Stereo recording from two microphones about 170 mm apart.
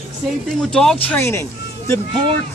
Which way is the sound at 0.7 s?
5° left (ahead or behind).